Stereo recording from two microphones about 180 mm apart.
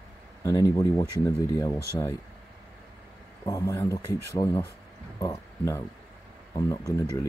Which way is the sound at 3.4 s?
15° left (ahead or behind).